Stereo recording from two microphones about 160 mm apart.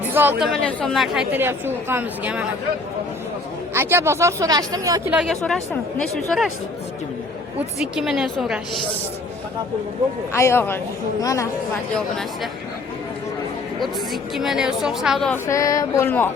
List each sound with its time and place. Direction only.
0.0 s speech: 10° right (ahead or behind)
0.4 s a woman's voice: 5° left (ahead or behind)
3.8 s speech: 15° right (ahead or behind)
5.1 s a woman's voice: centre (ahead or behind)
7.9 s a woman's voice: centre (ahead or behind)
10.3 s a sound: 15° left (ahead or behind)
11.2 s a woman's voice: 20° left (ahead or behind)
11.9 s a woman's voice: 5° left (ahead or behind)
13.7 s a woman's voice: centre (ahead or behind)
15.3 s a sound: 20° left (ahead or behind)